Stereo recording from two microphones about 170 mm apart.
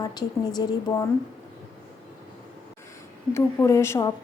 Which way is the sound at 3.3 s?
15° left (ahead or behind).